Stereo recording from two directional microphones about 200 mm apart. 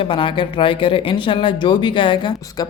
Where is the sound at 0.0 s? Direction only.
25° left (ahead or behind).